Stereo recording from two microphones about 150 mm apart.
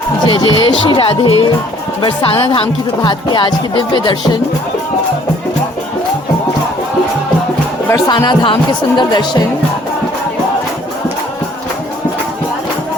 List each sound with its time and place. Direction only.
0.3 s speech: 35° left (ahead or behind)
7.9 s speech: 20° left (ahead or behind)
8.1 s speech: 30° left (ahead or behind)